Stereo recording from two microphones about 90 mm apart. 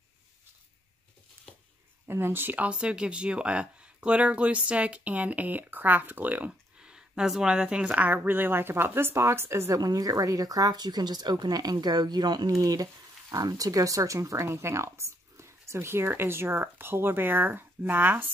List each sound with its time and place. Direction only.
1.4 s a sound: 25° right (ahead or behind)
2.0 s speech: 25° right (ahead or behind)
9.8 s speech: 45° right (ahead or behind); by 18.3 s 20° right (ahead or behind)